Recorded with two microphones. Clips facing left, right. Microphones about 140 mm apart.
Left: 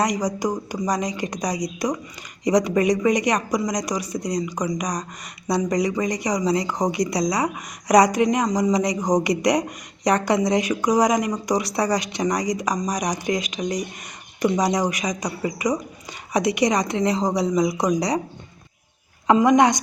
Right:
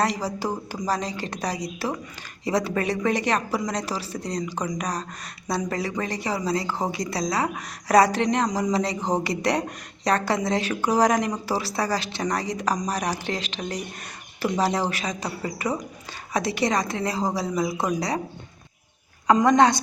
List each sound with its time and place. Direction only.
0.3 s speech: 15° left (ahead or behind)
19.4 s speech: 15° left (ahead or behind)